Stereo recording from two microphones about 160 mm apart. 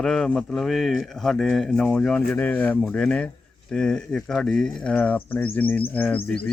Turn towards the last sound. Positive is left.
turn(degrees=10)  # may be behind; listen again after turning